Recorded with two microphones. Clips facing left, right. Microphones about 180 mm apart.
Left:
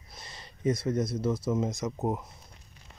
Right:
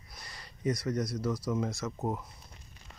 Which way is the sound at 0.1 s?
25° left (ahead or behind).